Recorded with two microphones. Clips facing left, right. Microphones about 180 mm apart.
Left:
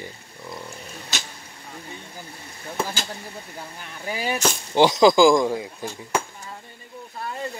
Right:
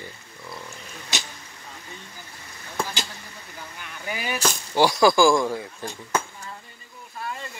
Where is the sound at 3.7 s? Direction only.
35° left (ahead or behind).